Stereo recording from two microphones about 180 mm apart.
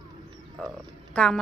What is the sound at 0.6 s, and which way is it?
Speech, 5° left (ahead or behind).